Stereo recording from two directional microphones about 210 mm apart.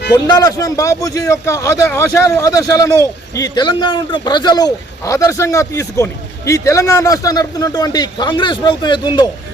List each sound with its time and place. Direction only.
0.1 s a man's voice: 20° left (ahead or behind)